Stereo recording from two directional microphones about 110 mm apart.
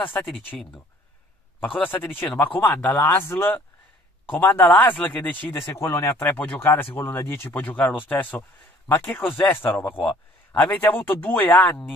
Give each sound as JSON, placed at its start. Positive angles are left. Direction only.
{"t": 0.0, "sound": "speech", "side_deg": 15}
{"t": 1.6, "sound": "speech", "side_deg": 15}